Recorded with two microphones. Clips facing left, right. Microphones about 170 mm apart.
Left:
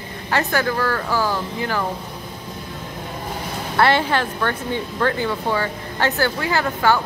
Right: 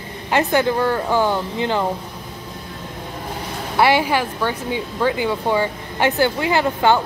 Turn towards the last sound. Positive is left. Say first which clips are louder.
# right 2 dB
turn(degrees=-20)  # may be behind; listen again after turning